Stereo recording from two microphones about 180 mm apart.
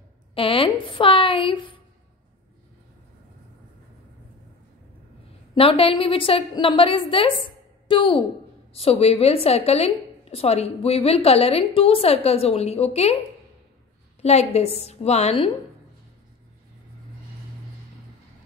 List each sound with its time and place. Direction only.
0.3 s a woman's voice: 30° left (ahead or behind)
5.5 s a woman's voice: 30° left (ahead or behind)
14.2 s a woman's voice: 35° left (ahead or behind)